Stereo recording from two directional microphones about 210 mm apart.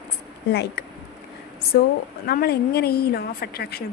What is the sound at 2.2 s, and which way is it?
A woman's voice, 45° left (ahead or behind).